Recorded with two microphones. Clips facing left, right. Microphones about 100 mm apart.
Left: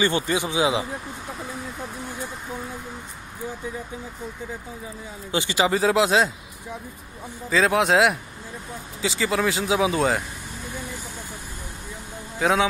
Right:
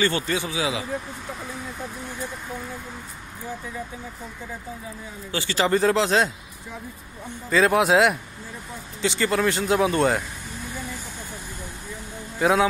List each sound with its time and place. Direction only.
0.0 s speech: 15° left (ahead or behind)
5.3 s speech: 15° left (ahead or behind)
5.7 s speech: 5° left (ahead or behind)
7.4 s speech: centre (ahead or behind)
12.4 s a man's voice: centre (ahead or behind)